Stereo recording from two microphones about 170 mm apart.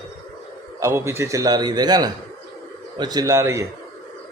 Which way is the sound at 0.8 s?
15° right (ahead or behind).